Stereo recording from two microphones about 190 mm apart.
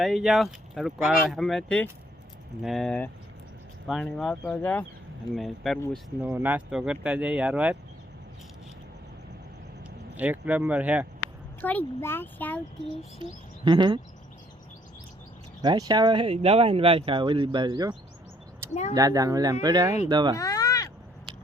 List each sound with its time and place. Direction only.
0.0 s speech: centre (ahead or behind)
10.2 s speech: 10° right (ahead or behind)
11.6 s speech: 10° left (ahead or behind)
13.7 s speech: 25° right (ahead or behind)
15.6 s speech: 20° right (ahead or behind)
18.7 s speech: 35° left (ahead or behind)
18.9 s speech: 20° right (ahead or behind)
20.3 s cat: 20° left (ahead or behind)